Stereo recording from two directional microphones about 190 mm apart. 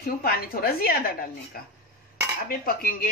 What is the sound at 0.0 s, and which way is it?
A woman's voice, 55° left (ahead or behind).